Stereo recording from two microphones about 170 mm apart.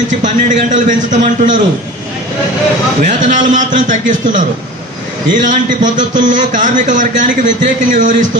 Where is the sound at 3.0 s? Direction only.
50° right (ahead or behind).